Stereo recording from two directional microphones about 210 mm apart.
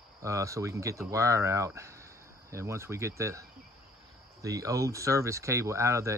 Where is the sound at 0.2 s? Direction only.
15° right (ahead or behind).